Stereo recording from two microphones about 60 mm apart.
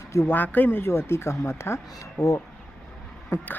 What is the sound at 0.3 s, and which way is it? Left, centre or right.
Speech, left.